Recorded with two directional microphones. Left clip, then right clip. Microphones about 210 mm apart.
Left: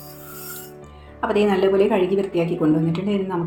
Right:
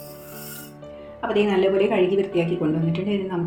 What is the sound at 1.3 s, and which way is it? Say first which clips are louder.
A woman's voice: left 2 dB; 20° left (ahead or behind).